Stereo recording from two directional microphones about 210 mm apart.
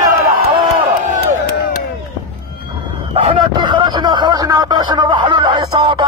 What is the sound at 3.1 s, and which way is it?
Speech, 25° right (ahead or behind).